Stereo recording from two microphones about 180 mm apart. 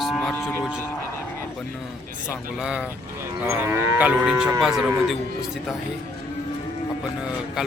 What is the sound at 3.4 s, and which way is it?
Livestock, 15° right (ahead or behind).